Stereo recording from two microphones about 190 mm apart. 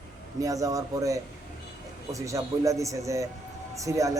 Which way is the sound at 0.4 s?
15° right (ahead or behind).